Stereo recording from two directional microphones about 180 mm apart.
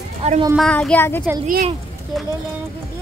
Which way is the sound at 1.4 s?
45° right (ahead or behind).